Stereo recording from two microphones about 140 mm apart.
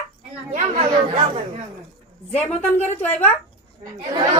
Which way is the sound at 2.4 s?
50° left (ahead or behind).